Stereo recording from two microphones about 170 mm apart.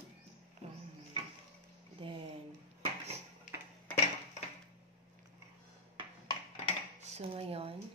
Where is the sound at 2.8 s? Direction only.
40° right (ahead or behind).